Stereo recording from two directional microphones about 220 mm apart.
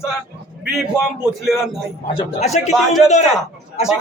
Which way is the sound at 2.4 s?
30° left (ahead or behind).